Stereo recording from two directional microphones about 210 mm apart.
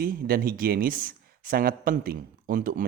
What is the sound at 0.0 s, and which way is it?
Speech, 45° right (ahead or behind).